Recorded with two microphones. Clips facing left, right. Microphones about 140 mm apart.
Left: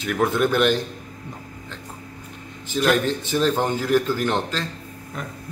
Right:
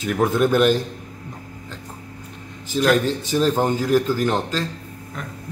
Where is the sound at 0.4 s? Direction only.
5° right (ahead or behind).